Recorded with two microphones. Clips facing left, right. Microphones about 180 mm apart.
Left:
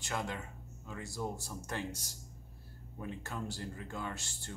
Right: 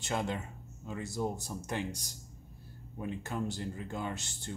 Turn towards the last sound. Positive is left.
turn(degrees=-20)  # may be behind; listen again after turning